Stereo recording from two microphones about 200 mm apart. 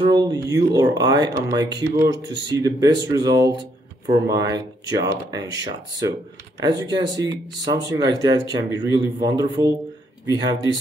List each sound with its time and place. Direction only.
0.0 s speech: 20° right (ahead or behind)